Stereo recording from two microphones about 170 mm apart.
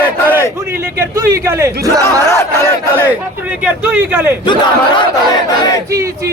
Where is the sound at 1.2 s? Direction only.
20° right (ahead or behind).